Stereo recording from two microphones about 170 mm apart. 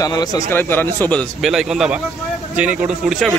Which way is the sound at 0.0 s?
25° left (ahead or behind).